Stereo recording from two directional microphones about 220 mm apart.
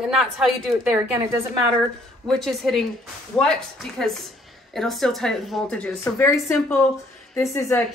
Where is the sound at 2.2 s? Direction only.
Centre (ahead or behind).